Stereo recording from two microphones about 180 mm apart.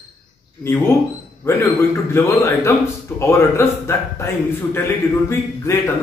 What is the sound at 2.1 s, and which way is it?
Speech, 15° left (ahead or behind).